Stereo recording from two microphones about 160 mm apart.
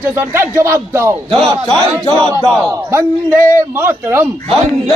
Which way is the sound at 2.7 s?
15° right (ahead or behind).